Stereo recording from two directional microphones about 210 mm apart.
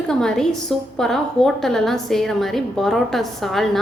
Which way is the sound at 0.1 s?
5° left (ahead or behind).